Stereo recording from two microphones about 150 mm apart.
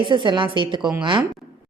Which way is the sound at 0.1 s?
35° right (ahead or behind).